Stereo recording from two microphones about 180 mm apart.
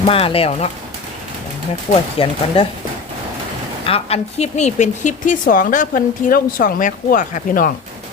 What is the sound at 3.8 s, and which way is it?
Speech, 35° left (ahead or behind).